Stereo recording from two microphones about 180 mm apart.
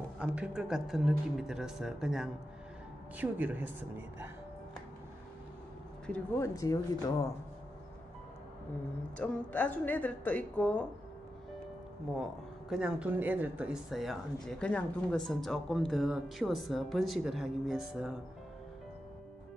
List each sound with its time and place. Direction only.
0.2 s a woman's voice: 5° right (ahead or behind)
6.0 s a woman's voice: 10° left (ahead or behind)
9.1 s a woman's voice: 5° left (ahead or behind)
12.2 s speech: centre (ahead or behind)